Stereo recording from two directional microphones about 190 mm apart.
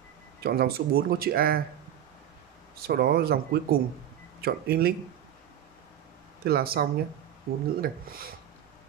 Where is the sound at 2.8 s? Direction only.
55° right (ahead or behind).